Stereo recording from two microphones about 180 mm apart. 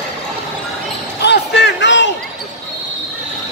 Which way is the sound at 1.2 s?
70° left (ahead or behind).